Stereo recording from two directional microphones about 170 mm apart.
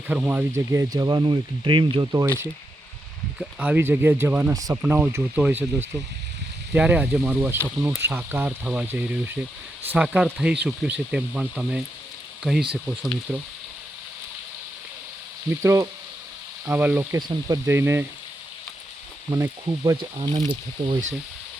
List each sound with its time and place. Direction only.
0.1 s speech: 10° right (ahead or behind); by 2.2 s 30° right (ahead or behind)
3.3 s speech: 10° right (ahead or behind)
6.7 s speech: 10° right (ahead or behind)
15.4 s speech: 15° right (ahead or behind)
17.2 s speech: 25° right (ahead or behind)
19.3 s speech: 20° right (ahead or behind)